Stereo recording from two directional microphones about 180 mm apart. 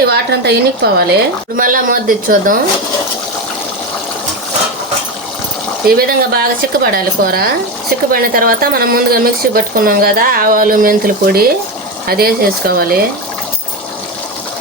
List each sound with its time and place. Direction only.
0.1 s a woman's voice: 65° right (ahead or behind)
1.5 s a woman's voice: 50° right (ahead or behind)
6.0 s speech: 55° right (ahead or behind)